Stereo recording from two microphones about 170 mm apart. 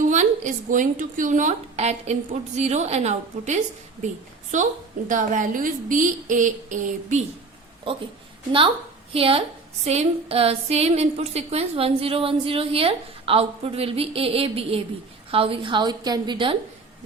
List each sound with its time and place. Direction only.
0.0 s a woman's voice: 45° right (ahead or behind)
9.1 s a woman's voice: 35° right (ahead or behind)